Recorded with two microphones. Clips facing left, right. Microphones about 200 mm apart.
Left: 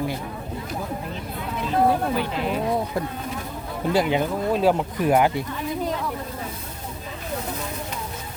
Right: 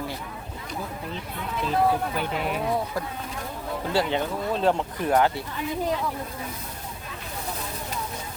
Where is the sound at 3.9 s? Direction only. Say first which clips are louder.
Left 4 dB; 15° left (ahead or behind).